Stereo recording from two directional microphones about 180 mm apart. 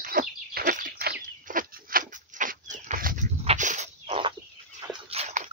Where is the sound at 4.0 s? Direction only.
30° right (ahead or behind).